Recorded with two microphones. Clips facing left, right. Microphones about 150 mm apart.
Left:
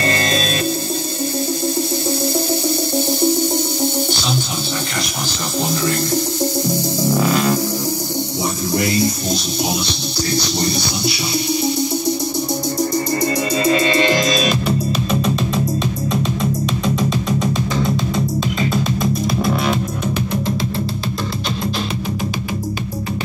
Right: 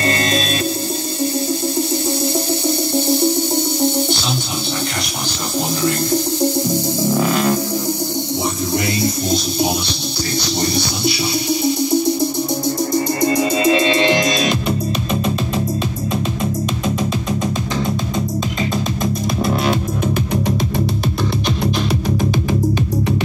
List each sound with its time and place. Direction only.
13.2 s music: 20° right (ahead or behind)